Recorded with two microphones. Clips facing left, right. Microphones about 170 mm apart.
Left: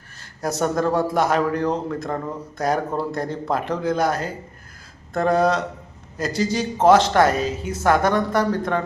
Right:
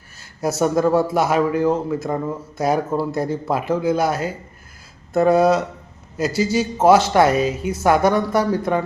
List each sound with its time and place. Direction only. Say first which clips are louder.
0.2 s a man's voice: right 3 dB; 10° right (ahead or behind)